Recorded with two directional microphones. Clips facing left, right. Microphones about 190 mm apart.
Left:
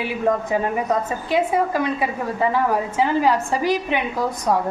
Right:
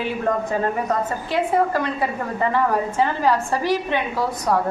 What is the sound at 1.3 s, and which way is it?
A woman's voice, 15° left (ahead or behind).